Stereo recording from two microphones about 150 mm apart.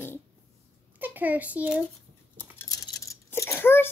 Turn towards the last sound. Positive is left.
turn(degrees=15)  # may be behind; listen again after turning